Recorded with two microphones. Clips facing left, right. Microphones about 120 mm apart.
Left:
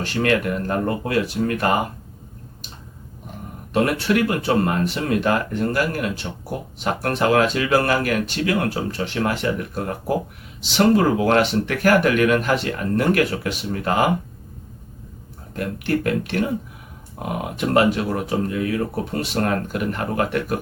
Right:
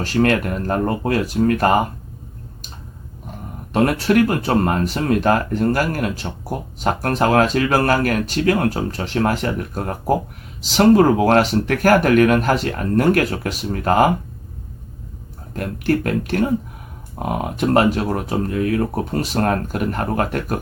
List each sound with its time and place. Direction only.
0.0 s speech: 40° right (ahead or behind)
3.7 s speech: 40° right (ahead or behind)
15.5 s speech: 40° right (ahead or behind)